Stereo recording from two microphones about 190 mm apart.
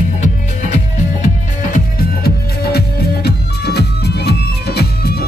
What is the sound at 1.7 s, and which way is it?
Music, 55° left (ahead or behind).